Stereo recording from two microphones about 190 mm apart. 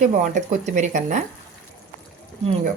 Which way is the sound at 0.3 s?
40° right (ahead or behind).